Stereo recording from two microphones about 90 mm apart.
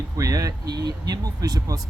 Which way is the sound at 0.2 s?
40° right (ahead or behind).